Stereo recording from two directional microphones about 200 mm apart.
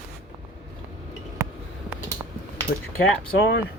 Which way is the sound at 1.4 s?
15° right (ahead or behind).